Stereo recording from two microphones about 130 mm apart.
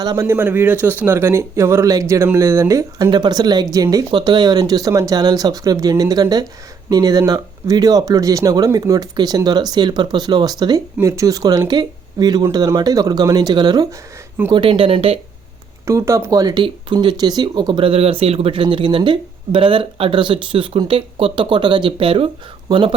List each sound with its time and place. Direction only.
0.0 s speech: 30° right (ahead or behind)
0.3 s speech: 15° right (ahead or behind); by 15.2 s 45° right (ahead or behind)
15.9 s speech: 20° right (ahead or behind); by 23.0 s 40° right (ahead or behind)